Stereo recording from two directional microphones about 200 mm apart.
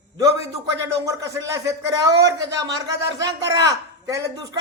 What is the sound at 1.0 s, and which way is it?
A man's voice, 15° right (ahead or behind).